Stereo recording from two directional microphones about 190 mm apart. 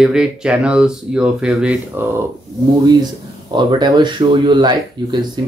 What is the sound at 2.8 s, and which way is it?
Speech, 20° right (ahead or behind).